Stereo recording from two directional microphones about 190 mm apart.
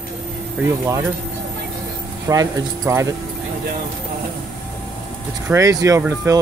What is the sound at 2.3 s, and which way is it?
Speech, 15° right (ahead or behind).